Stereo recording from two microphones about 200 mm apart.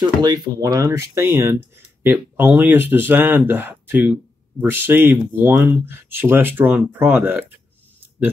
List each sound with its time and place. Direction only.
0.0 s speech: 20° right (ahead or behind)